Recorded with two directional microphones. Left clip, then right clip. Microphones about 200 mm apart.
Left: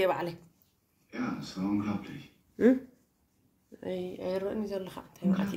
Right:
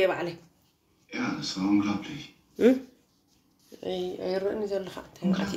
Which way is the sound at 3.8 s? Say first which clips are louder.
Right 4 dB; 50° left (ahead or behind).